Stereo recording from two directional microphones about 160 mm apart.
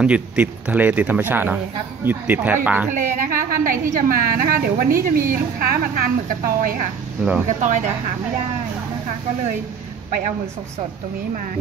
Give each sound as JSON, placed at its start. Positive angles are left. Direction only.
{"t": 0.0, "sound": "speech", "side_deg": -10}
{"t": 2.9, "sound": "a woman's voice", "side_deg": -55}
{"t": 7.4, "sound": "speech", "side_deg": -50}